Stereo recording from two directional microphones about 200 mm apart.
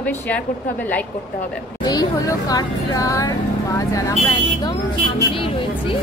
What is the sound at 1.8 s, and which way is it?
Speech, 20° left (ahead or behind).